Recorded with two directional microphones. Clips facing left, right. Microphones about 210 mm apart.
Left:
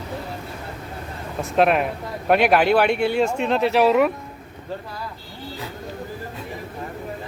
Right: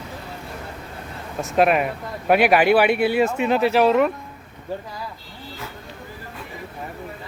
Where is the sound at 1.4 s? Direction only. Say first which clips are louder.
Even; centre (ahead or behind).